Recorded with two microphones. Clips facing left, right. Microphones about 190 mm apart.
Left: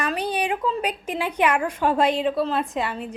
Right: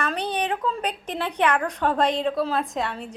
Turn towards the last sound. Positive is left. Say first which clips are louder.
# left 2 dB
turn(degrees=5)  # may be behind; listen again after turning